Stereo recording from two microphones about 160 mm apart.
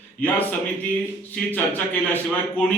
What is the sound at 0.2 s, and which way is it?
Speech, 60° left (ahead or behind).